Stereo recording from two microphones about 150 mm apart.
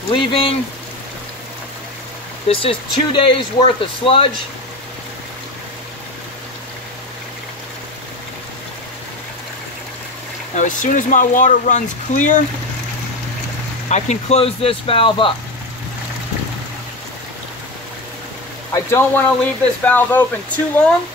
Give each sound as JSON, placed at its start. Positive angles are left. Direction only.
{"t": 0.1, "sound": "speech", "side_deg": 35}
{"t": 2.4, "sound": "speech", "side_deg": 40}
{"t": 10.5, "sound": "speech", "side_deg": 55}
{"t": 13.8, "sound": "speech", "side_deg": 50}
{"t": 18.7, "sound": "speech", "side_deg": 15}